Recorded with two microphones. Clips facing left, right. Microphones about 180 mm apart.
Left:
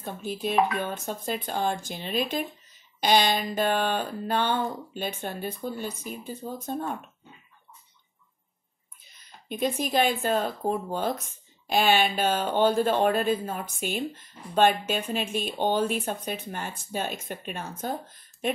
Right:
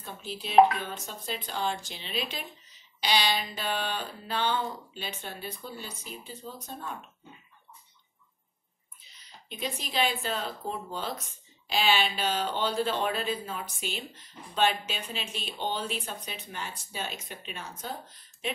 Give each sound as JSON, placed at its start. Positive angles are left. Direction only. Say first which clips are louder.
{"t": 0.0, "sound": "speech", "louder": "left 8 dB", "side_deg": 50}
{"t": 9.0, "sound": "speech", "louder": "left 1 dB", "side_deg": 50}